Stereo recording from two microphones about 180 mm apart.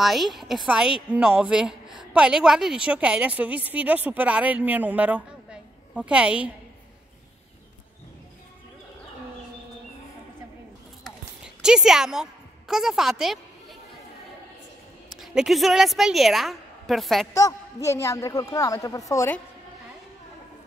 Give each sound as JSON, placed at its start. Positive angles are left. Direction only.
{"t": 0.0, "sound": "a woman's voice", "side_deg": 0}
{"t": 11.1, "sound": "a sound", "side_deg": -5}
{"t": 15.0, "sound": "a woman's voice", "side_deg": 0}
{"t": 17.3, "sound": "a woman's voice", "side_deg": 20}